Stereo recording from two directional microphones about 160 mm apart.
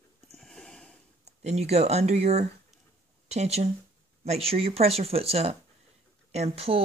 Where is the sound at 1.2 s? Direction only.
45° right (ahead or behind).